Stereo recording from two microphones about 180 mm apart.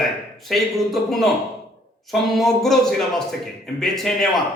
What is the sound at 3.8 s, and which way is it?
Speech, centre (ahead or behind).